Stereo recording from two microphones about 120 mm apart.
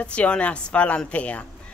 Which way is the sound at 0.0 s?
10° left (ahead or behind).